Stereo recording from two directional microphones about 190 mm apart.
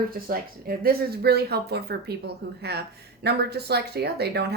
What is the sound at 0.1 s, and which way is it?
A woman's voice, 50° right (ahead or behind).